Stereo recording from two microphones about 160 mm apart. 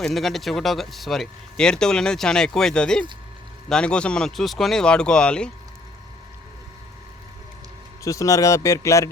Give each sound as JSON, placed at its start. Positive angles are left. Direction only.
{"t": 0.0, "sound": "speech", "side_deg": 0}
{"t": 8.0, "sound": "speech", "side_deg": 20}